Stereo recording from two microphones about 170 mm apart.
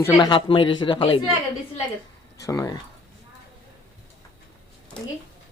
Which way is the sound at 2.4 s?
20° left (ahead or behind).